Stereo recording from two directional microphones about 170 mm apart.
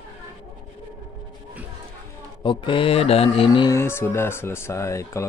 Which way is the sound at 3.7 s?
15° left (ahead or behind).